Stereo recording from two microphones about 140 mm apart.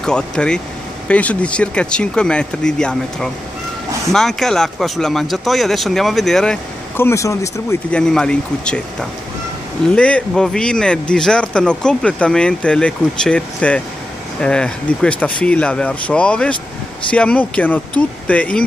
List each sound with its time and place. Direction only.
0.0 s speech: 5° left (ahead or behind)
7.0 s speech: 20° left (ahead or behind)
7.9 s speech: 5° left (ahead or behind)
9.9 s speech: 10° left (ahead or behind)